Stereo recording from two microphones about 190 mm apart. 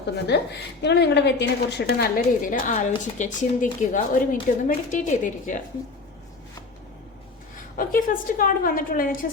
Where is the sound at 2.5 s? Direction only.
40° left (ahead or behind).